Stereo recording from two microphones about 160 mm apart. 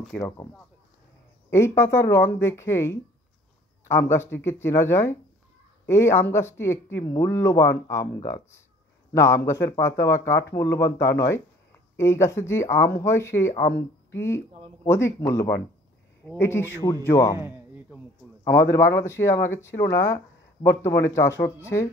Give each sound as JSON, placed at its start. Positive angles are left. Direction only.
{"t": 0.1, "sound": "speech", "side_deg": 5}
{"t": 1.5, "sound": "speech", "side_deg": 15}
{"t": 17.4, "sound": "a sound", "side_deg": -10}
{"t": 18.4, "sound": "speech", "side_deg": 15}